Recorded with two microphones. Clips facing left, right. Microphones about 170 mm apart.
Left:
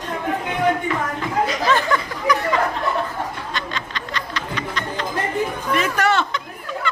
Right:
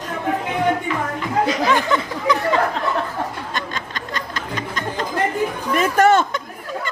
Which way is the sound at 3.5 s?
45° right (ahead or behind).